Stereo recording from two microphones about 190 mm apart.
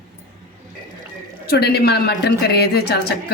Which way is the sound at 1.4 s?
55° left (ahead or behind).